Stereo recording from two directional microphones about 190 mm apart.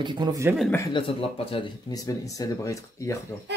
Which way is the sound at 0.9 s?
25° left (ahead or behind).